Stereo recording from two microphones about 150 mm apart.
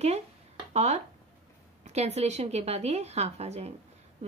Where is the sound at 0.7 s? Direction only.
50° right (ahead or behind).